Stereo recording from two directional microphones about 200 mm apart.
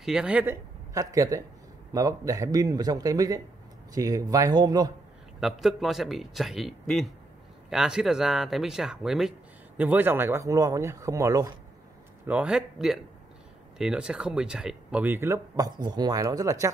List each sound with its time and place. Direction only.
0.0 s a man's voice: 5° right (ahead or behind)
0.9 s speech: 15° right (ahead or behind)
5.4 s a man's voice: centre (ahead or behind); by 11.5 s 15° right (ahead or behind)
12.3 s a man's voice: 5° right (ahead or behind)